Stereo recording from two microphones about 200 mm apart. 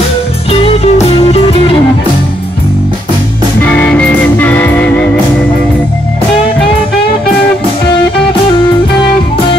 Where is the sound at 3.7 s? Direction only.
10° left (ahead or behind).